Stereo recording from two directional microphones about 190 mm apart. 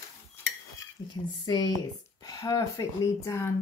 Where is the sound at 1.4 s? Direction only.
20° left (ahead or behind).